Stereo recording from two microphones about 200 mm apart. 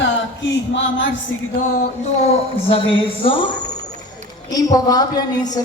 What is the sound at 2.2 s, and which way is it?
A woman's voice, 30° left (ahead or behind).